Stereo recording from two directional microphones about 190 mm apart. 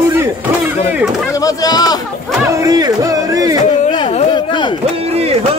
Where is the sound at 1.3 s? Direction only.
20° left (ahead or behind).